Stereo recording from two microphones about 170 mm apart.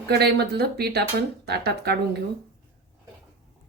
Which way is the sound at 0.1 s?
75° right (ahead or behind).